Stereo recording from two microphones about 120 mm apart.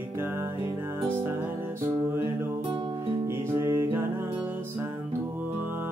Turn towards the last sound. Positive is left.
turn(degrees=-20)  # may be behind; listen again after turning